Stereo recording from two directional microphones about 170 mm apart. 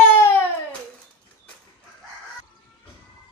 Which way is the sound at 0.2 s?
15° left (ahead or behind).